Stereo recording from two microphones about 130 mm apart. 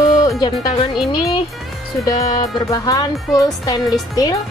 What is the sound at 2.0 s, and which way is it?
A woman's voice, 30° left (ahead or behind).